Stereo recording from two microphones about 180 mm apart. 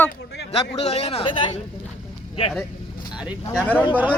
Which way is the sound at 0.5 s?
35° left (ahead or behind).